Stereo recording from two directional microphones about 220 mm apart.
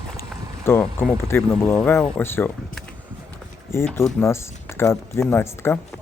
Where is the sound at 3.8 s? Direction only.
Centre (ahead or behind).